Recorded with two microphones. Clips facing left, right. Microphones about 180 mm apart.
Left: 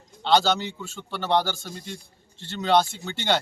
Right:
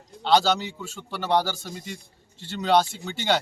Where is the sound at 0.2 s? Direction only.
5° right (ahead or behind).